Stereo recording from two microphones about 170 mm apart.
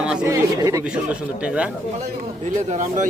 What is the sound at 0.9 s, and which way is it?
Speech, 5° right (ahead or behind).